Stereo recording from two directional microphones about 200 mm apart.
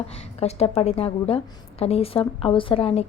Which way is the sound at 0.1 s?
30° left (ahead or behind).